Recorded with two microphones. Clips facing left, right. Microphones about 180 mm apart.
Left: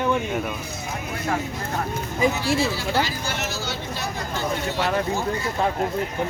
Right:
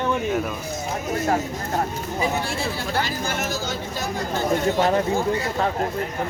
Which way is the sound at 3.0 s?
50° right (ahead or behind).